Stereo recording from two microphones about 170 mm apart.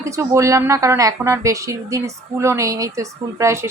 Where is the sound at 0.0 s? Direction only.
20° right (ahead or behind).